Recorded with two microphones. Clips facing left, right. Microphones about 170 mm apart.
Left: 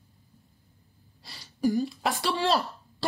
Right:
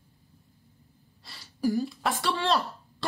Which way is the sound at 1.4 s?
5° right (ahead or behind).